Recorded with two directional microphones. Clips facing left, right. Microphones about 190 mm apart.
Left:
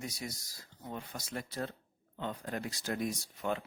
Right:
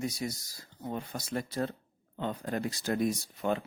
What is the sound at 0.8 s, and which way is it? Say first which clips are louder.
Speech: right 6 dB; 45° right (ahead or behind).